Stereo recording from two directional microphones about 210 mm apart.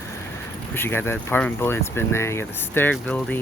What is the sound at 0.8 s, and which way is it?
Speech, 10° left (ahead or behind).